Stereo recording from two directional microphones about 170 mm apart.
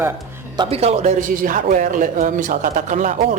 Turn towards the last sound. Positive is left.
turn(degrees=-45)  # may be behind; listen again after turning